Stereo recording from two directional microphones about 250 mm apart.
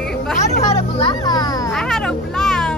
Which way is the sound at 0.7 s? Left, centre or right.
Left.